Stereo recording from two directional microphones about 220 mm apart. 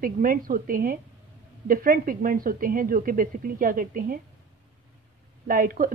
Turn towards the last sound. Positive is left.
turn(degrees=-40)  # may be behind; listen again after turning